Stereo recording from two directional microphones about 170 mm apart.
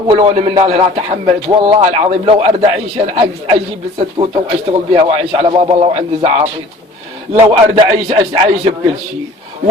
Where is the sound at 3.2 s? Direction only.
30° right (ahead or behind).